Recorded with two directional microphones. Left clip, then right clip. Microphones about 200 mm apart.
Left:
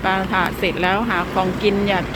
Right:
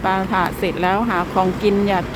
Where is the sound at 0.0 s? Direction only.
15° right (ahead or behind).